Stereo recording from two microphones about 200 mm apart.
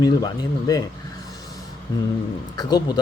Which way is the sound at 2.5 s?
20° left (ahead or behind).